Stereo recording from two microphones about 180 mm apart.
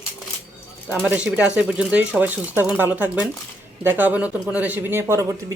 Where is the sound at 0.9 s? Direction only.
5° right (ahead or behind).